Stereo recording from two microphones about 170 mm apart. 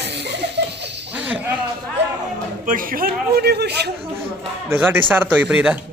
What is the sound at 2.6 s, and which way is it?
A man's voice, 55° right (ahead or behind).